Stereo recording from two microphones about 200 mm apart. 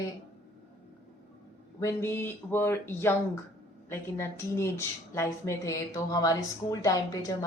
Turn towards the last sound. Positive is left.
turn(degrees=20)  # may be behind; listen again after turning